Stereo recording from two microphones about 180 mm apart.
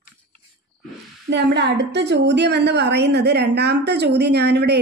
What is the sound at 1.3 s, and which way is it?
A woman's voice, 70° right (ahead or behind).